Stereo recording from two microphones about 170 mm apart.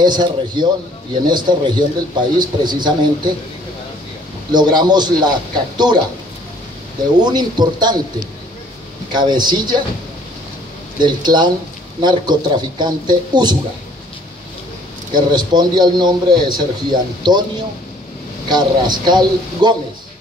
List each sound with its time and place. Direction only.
0.0 s a man's voice: 25° right (ahead or behind)
4.5 s a man's voice: 25° right (ahead or behind)
7.2 s a man's voice: 25° right (ahead or behind)
11.0 s a man's voice: 25° right (ahead or behind)
15.1 s a man's voice: 25° right (ahead or behind)
18.5 s a man's voice: 25° right (ahead or behind)